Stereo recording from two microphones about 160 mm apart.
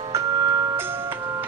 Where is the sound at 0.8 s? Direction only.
15° right (ahead or behind).